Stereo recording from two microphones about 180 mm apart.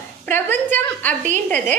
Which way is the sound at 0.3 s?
10° left (ahead or behind).